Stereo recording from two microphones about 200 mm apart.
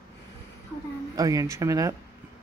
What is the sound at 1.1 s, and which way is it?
Speech, 15° right (ahead or behind).